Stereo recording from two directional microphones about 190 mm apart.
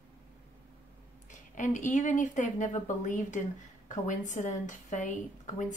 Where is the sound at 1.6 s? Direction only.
40° left (ahead or behind).